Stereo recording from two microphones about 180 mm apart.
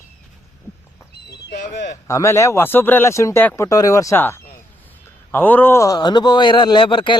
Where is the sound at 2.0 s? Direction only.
15° left (ahead or behind).